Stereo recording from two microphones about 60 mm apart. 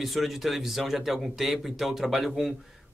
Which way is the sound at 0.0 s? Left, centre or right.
Centre.